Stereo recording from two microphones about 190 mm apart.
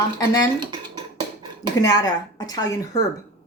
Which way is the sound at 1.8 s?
20° left (ahead or behind).